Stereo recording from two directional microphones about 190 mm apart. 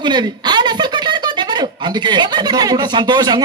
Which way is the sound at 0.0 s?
20° right (ahead or behind).